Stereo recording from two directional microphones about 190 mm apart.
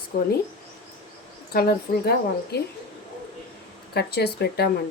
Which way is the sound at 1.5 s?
55° left (ahead or behind).